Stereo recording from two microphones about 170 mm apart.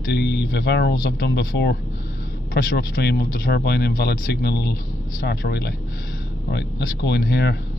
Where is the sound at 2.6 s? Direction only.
60° left (ahead or behind).